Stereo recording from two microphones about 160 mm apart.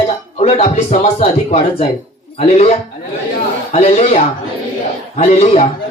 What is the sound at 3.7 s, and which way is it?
Speech, 40° left (ahead or behind).